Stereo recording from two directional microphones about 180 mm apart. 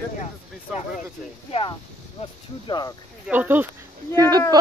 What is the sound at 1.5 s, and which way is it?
Speech, 30° left (ahead or behind).